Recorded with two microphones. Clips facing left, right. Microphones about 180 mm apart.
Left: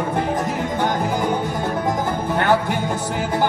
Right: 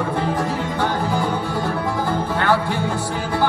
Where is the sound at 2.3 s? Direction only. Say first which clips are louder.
Left 2 dB; 20° left (ahead or behind).